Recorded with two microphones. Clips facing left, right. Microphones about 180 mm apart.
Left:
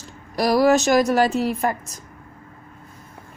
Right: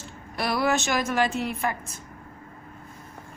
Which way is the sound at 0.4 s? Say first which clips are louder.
Left 8 dB; 40° left (ahead or behind).